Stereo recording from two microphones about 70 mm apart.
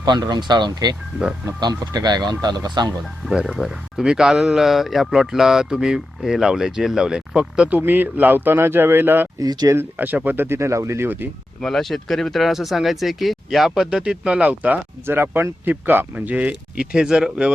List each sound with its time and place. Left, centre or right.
0.0 s speech: right
3.2 s a man's voice: centre
7.8 s speech: right
9.4 s speech: right
10.2 s speech: right
11.6 s speech: centre; by 14.8 s right
15.0 s a man's voice: right; by 17.5 s centre